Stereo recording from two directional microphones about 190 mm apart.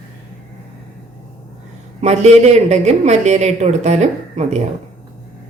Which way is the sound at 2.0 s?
35° right (ahead or behind).